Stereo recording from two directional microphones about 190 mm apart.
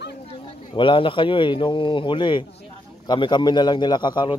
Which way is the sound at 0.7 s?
25° left (ahead or behind).